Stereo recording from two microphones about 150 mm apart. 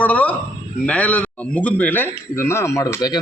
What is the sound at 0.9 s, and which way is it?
A man's voice, 10° left (ahead or behind).